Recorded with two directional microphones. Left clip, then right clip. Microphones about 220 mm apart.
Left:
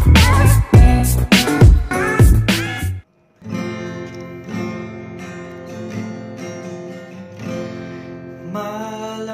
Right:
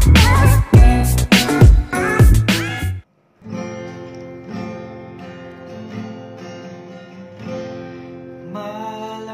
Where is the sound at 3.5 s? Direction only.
40° left (ahead or behind).